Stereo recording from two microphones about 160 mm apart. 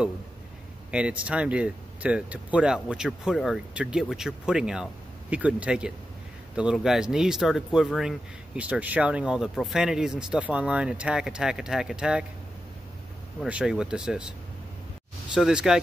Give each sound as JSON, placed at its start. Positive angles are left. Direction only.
{"t": 0.9, "sound": "speech", "side_deg": -5}
{"t": 13.4, "sound": "speech", "side_deg": -5}
{"t": 15.3, "sound": "speech", "side_deg": -5}